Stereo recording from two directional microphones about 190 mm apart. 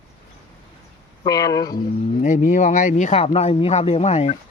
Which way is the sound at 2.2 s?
40° left (ahead or behind).